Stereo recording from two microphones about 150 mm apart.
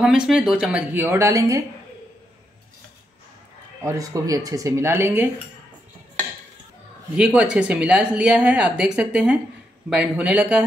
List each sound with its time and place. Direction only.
0.0 s speech: 5° right (ahead or behind); by 1.6 s 20° right (ahead or behind)
3.8 s speech: 20° right (ahead or behind)
7.2 s speech: 5° right (ahead or behind)